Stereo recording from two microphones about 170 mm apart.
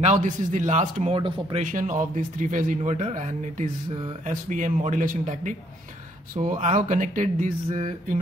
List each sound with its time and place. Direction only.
0.0 s a man's voice: 45° right (ahead or behind)
1.1 s speech: 30° right (ahead or behind)
1.6 s a man's voice: 50° right (ahead or behind)